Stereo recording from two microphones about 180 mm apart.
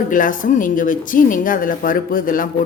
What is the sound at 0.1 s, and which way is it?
Speech, 45° left (ahead or behind).